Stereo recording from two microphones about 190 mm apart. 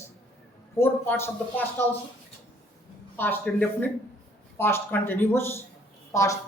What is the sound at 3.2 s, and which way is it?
Speech, 10° left (ahead or behind).